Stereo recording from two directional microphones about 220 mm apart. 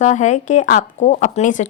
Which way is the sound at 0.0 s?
35° left (ahead or behind).